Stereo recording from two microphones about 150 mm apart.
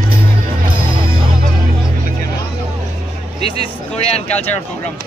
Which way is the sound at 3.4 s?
40° left (ahead or behind).